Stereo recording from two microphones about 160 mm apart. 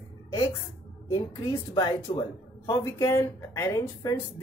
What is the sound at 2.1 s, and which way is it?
Speech, 30° left (ahead or behind).